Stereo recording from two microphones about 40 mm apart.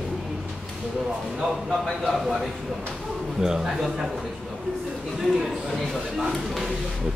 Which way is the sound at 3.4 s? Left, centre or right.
Centre.